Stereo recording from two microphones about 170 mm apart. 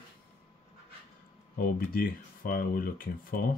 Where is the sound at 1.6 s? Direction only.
60° left (ahead or behind).